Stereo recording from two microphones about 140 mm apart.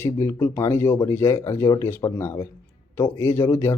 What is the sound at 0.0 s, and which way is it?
Speech, 20° left (ahead or behind).